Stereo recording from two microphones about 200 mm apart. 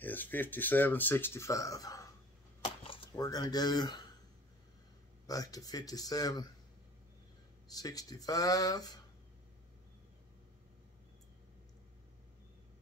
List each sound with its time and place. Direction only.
0.0 s speech: 10° left (ahead or behind)
2.6 s a sound: 20° left (ahead or behind)
5.2 s a man's voice: 20° left (ahead or behind)
7.7 s a man's voice: 20° left (ahead or behind)